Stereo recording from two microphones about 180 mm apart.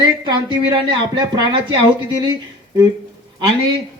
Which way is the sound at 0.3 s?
25° right (ahead or behind).